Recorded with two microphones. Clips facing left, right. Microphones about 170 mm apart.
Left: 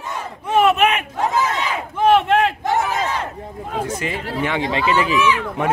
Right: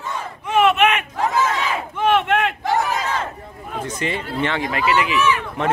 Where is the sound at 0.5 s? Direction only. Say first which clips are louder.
Left 1 dB; 40° left (ahead or behind).